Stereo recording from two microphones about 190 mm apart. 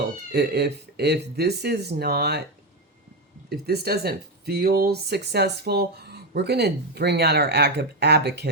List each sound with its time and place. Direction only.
0.3 s speech: 60° right (ahead or behind)
3.5 s speech: 55° right (ahead or behind)